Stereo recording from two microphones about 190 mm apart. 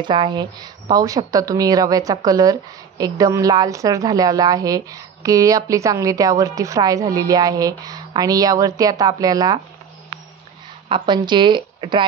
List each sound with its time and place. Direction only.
0.0 s a woman's voice: 25° right (ahead or behind)
10.9 s a woman's voice: 25° right (ahead or behind)